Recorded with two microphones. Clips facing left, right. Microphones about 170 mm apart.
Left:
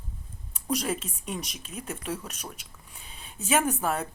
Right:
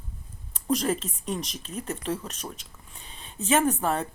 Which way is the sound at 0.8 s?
5° left (ahead or behind).